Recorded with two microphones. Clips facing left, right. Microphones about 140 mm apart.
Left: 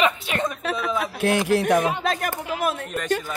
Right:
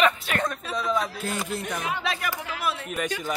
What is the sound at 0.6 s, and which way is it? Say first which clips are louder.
Speech: left 4 dB; 65° left (ahead or behind).